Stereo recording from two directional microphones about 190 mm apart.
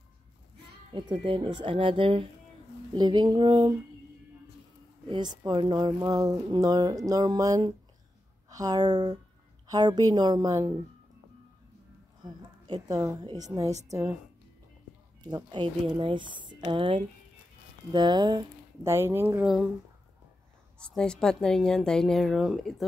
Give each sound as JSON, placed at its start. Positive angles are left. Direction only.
{"t": 0.9, "sound": "speech", "side_deg": -25}
{"t": 5.0, "sound": "speech", "side_deg": -25}
{"t": 12.2, "sound": "a woman's voice", "side_deg": -20}
{"t": 15.2, "sound": "speech", "side_deg": -25}
{"t": 20.8, "sound": "speech", "side_deg": 5}